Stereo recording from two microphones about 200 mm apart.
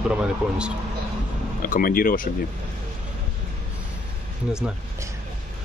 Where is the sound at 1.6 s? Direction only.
45° left (ahead or behind).